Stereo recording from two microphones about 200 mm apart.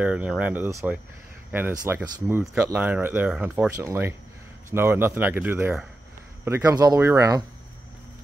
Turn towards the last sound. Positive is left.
turn(degrees=-15)  # may be behind; listen again after turning